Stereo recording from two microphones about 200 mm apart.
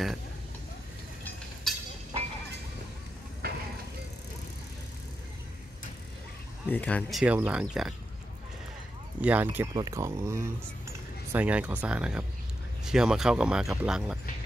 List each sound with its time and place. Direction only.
1.2 s a sound: 5° left (ahead or behind)
3.4 s vehicle: 50° right (ahead or behind)
6.7 s speech: 5° left (ahead or behind)
9.2 s speech: 10° right (ahead or behind)